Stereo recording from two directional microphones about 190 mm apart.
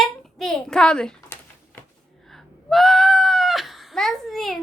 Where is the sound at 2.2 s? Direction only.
Centre (ahead or behind).